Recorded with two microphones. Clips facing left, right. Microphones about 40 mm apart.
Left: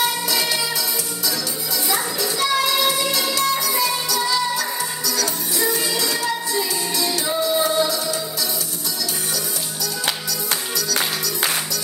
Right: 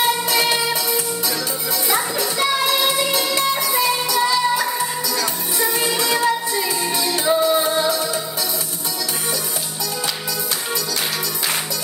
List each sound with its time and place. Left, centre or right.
0.3 s music: right
2.0 s music: right
5.5 s music: right